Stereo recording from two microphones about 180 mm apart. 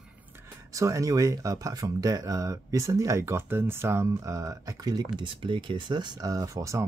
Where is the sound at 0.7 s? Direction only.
15° right (ahead or behind).